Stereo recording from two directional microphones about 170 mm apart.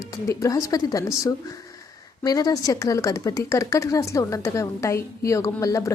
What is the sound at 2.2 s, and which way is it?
A woman's voice, 20° left (ahead or behind).